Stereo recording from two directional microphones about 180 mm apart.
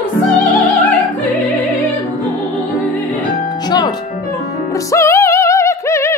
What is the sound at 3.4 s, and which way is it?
Music, 25° left (ahead or behind).